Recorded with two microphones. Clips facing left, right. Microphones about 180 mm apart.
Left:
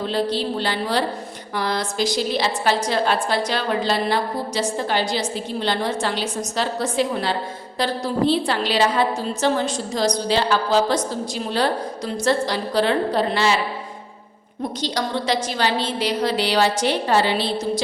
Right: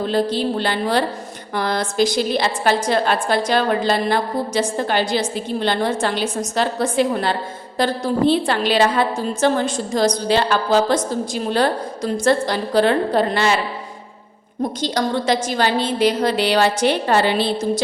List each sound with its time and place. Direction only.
0.0 s a woman's voice: 50° right (ahead or behind)
14.8 s a woman's voice: 50° right (ahead or behind)